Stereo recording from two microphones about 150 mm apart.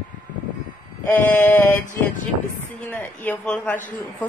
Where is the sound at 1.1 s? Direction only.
10° left (ahead or behind).